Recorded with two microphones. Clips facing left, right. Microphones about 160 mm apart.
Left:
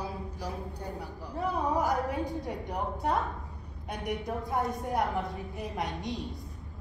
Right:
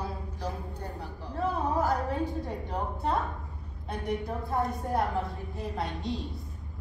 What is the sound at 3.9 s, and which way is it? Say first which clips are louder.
A man's voice: right 1 dB; 15° left (ahead or behind).